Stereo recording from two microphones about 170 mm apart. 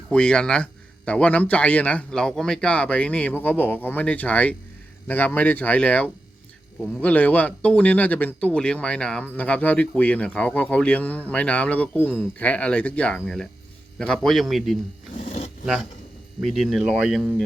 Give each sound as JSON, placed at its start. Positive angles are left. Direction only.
{"t": 0.1, "sound": "speech", "side_deg": 5}
{"t": 15.3, "sound": "filing", "side_deg": 45}
{"t": 16.4, "sound": "speech", "side_deg": 0}